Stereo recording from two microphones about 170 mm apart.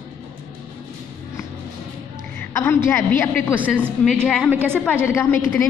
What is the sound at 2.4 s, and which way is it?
Speech, 15° left (ahead or behind).